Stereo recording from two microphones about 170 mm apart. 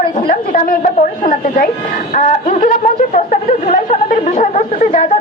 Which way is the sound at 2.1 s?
50° left (ahead or behind).